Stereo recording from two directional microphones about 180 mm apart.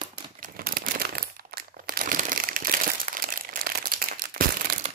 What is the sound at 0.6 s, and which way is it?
Crumpling, 55° right (ahead or behind).